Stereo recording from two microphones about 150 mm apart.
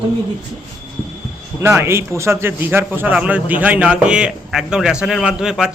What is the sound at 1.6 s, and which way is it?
A man's voice, 15° right (ahead or behind).